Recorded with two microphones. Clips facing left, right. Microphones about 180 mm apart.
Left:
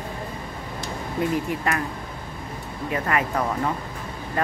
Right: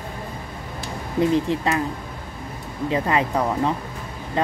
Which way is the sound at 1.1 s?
25° right (ahead or behind).